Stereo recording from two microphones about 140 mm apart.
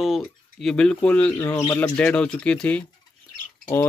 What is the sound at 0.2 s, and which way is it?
Speech, 5° left (ahead or behind).